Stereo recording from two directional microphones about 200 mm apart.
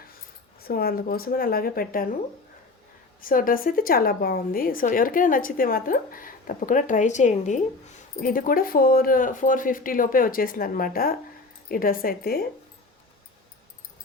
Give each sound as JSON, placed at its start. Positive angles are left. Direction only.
{"t": 0.6, "sound": "a woman's voice", "side_deg": 50}
{"t": 3.2, "sound": "a woman's voice", "side_deg": 45}